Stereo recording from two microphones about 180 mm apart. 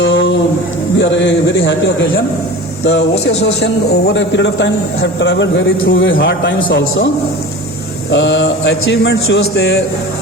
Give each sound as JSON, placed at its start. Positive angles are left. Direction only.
{"t": 0.0, "sound": "a sound", "side_deg": 85}
{"t": 0.9, "sound": "a man's voice", "side_deg": 90}
{"t": 3.4, "sound": "a man's voice", "side_deg": 70}
{"t": 6.7, "sound": "a man's voice", "side_deg": 75}
{"t": 8.1, "sound": "a man's voice", "side_deg": 85}